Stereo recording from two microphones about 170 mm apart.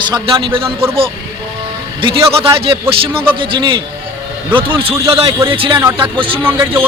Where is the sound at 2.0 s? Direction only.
30° right (ahead or behind).